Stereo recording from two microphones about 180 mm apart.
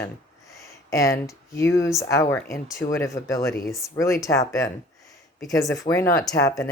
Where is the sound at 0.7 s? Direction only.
15° left (ahead or behind).